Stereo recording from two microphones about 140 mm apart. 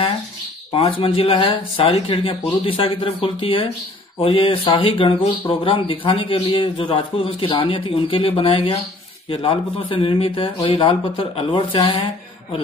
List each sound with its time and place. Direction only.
0.7 s a man's voice: 40° left (ahead or behind)